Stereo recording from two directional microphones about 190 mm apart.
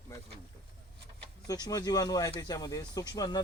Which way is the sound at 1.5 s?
20° left (ahead or behind).